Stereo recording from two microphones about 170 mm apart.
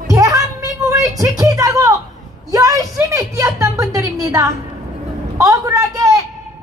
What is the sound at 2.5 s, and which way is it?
A woman's voice, 20° right (ahead or behind).